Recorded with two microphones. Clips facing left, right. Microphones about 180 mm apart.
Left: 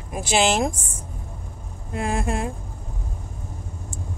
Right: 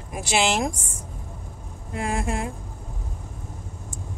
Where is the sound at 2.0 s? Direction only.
30° left (ahead or behind).